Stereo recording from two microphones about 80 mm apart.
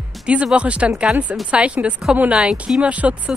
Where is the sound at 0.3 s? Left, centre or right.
Centre.